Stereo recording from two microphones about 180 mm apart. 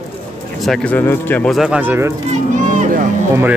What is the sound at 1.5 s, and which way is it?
Speech, 5° right (ahead or behind).